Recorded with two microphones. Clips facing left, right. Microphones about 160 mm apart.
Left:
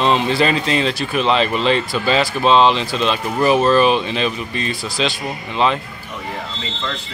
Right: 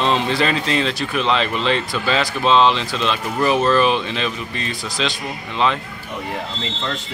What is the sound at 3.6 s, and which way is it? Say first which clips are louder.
Speech: left 2 dB; 20° left (ahead or behind).